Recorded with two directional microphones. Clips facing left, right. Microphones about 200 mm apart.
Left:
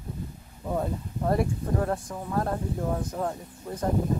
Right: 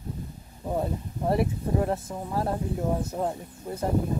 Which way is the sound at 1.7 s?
20° right (ahead or behind).